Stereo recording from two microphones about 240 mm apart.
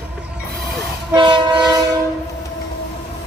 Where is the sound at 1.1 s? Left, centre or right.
Centre.